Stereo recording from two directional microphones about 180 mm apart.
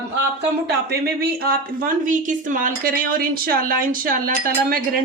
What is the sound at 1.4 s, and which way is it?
A woman's voice, 55° right (ahead or behind).